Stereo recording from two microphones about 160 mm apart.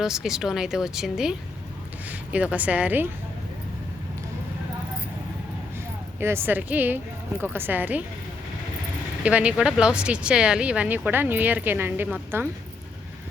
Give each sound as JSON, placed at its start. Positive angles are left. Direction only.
{"t": 0.0, "sound": "speech", "side_deg": -5}
{"t": 6.1, "sound": "speech", "side_deg": -15}
{"t": 9.2, "sound": "speech", "side_deg": -10}